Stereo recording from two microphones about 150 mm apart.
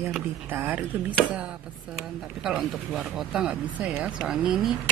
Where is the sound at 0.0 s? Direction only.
15° right (ahead or behind).